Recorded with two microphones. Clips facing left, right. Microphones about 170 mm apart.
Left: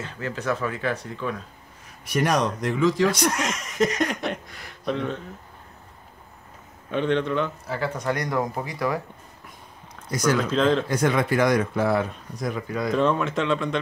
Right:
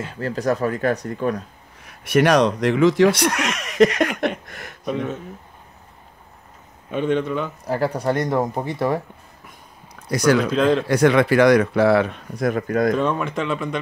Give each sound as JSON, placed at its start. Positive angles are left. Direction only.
{"t": 0.2, "sound": "speech", "side_deg": -40}
{"t": 1.9, "sound": "speech", "side_deg": -70}
{"t": 4.8, "sound": "speech", "side_deg": -5}
{"t": 6.9, "sound": "speech", "side_deg": -10}
{"t": 7.6, "sound": "speech", "side_deg": -40}
{"t": 10.0, "sound": "speech", "side_deg": -70}
{"t": 10.5, "sound": "speech", "side_deg": -5}
{"t": 10.9, "sound": "speech", "side_deg": -70}
{"t": 12.9, "sound": "speech", "side_deg": 0}